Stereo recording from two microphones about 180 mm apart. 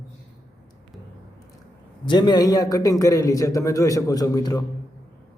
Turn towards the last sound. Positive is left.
turn(degrees=20)  # may be behind; listen again after turning